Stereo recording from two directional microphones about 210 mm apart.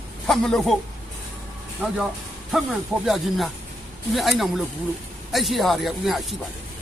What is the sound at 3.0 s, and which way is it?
Speech, centre (ahead or behind).